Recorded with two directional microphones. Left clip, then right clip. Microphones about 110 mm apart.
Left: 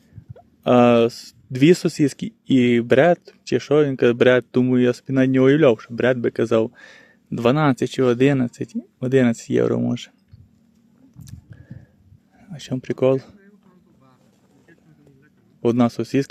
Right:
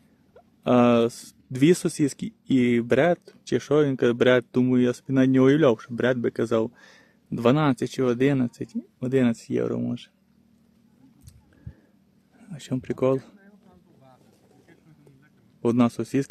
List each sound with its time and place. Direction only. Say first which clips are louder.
0.3 s speech: left 5 dB; 30° left (ahead or behind)
3.2 s speech: left 4 dB; 20° left (ahead or behind); by 10.1 s 50° left (ahead or behind)
12.4 s speech: left 3 dB; 15° left (ahead or behind)
15.6 s speech: left 4 dB; 20° left (ahead or behind)